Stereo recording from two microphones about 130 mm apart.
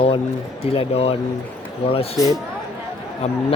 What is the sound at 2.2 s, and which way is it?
Speech, 25° left (ahead or behind).